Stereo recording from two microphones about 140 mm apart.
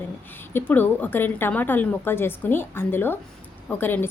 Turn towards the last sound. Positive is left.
turn(degrees=15)  # may be behind; listen again after turning